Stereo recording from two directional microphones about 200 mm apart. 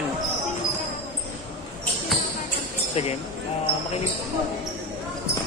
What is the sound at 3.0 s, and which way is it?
Speech, 30° left (ahead or behind).